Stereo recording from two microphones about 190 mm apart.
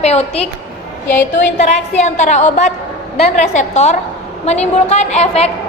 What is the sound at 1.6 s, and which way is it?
A woman's voice, 35° left (ahead or behind).